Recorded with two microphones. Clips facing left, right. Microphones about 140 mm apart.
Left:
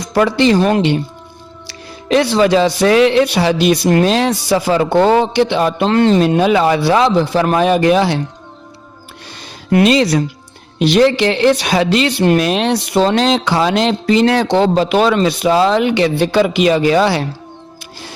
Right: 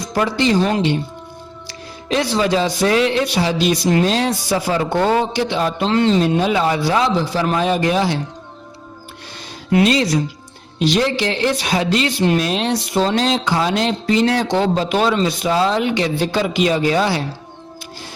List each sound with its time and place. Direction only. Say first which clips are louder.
0.0 s speech: left 5 dB; 70° left (ahead or behind)
9.7 s speech: left 4 dB; 70° left (ahead or behind)